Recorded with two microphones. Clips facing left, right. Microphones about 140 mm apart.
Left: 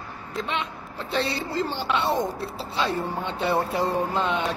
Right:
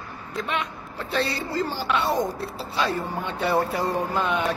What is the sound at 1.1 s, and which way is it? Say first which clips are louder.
Speech: even; 20° left (ahead or behind).